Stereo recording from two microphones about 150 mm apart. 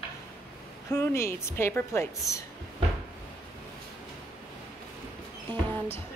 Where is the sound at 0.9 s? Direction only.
15° left (ahead or behind).